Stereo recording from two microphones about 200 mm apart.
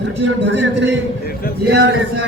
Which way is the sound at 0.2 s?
65° right (ahead or behind).